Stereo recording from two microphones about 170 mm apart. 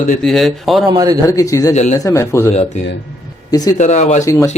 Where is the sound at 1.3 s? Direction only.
20° left (ahead or behind).